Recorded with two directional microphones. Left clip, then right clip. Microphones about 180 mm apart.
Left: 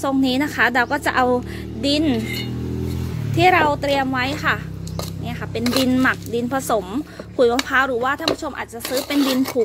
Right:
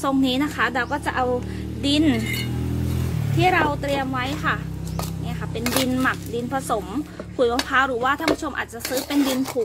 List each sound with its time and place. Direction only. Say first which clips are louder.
0.0 s a woman's voice: left 2 dB; 30° left (ahead or behind); by 1.3 s 50° left (ahead or behind)
1.8 s speech: left 1 dB; 25° left (ahead or behind)
3.3 s speech: left 4 dB; 40° left (ahead or behind)
5.9 s speech: left 4 dB; 45° left (ahead or behind); by 9.0 s 25° left (ahead or behind)
9.1 s speech: left 3 dB; 35° left (ahead or behind)